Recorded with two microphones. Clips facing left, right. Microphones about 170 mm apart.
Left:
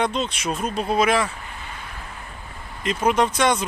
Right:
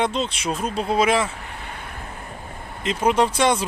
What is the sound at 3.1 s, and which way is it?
Speech, 30° right (ahead or behind).